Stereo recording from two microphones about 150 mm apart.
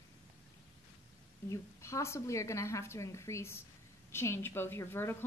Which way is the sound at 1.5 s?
20° left (ahead or behind).